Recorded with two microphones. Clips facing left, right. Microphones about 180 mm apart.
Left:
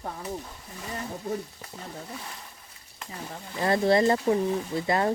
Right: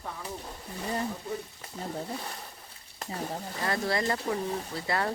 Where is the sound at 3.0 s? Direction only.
35° right (ahead or behind).